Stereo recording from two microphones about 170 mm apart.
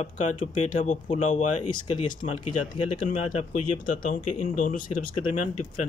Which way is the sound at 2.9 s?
50° left (ahead or behind).